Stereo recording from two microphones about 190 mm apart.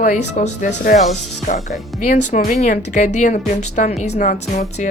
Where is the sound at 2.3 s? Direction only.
45° left (ahead or behind).